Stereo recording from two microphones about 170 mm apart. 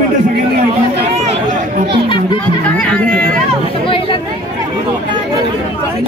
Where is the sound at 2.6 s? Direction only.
10° left (ahead or behind).